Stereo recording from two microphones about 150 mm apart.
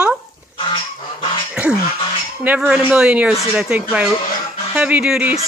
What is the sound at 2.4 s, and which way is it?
Speech, 10° right (ahead or behind).